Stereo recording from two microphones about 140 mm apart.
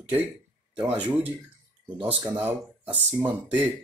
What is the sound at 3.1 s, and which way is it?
Speech, 10° right (ahead or behind).